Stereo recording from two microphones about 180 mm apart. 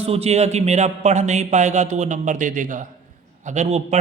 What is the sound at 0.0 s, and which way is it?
A man's voice, 35° right (ahead or behind).